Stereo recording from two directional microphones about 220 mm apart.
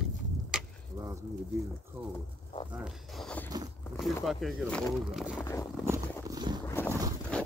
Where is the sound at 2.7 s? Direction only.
Centre (ahead or behind).